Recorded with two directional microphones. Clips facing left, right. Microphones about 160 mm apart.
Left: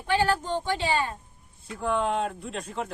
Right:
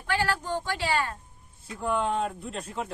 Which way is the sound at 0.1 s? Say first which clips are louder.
Left 3 dB; 20° left (ahead or behind).